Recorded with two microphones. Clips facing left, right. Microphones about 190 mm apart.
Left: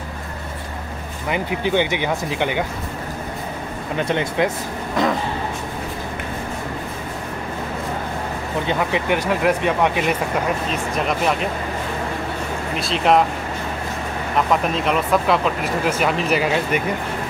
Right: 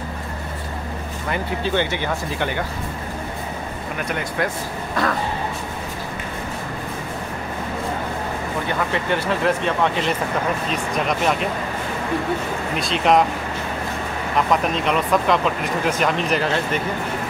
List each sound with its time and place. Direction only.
1.3 s speech: 15° left (ahead or behind)
4.1 s speech: 25° left (ahead or behind)
8.6 s speech: 15° left (ahead or behind)
10.7 s speech: centre (ahead or behind)
12.7 s speech: centre (ahead or behind)
14.5 s speech: centre (ahead or behind)